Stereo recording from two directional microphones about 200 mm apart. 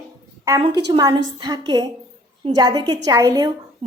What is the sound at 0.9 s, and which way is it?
A woman's voice, 20° right (ahead or behind).